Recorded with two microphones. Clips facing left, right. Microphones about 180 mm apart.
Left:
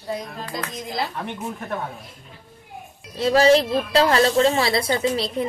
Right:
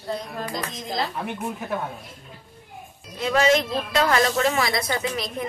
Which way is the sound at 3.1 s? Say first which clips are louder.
Left 4 dB; 35° left (ahead or behind).